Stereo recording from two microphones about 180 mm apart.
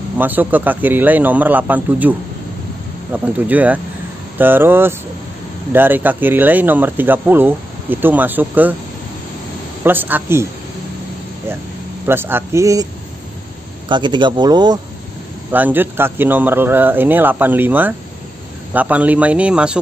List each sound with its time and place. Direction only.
0.2 s speech: 10° right (ahead or behind)
9.8 s speech: 10° right (ahead or behind)
12.1 s speech: 10° right (ahead or behind)
13.8 s speech: 25° right (ahead or behind)
15.5 s speech: 10° right (ahead or behind)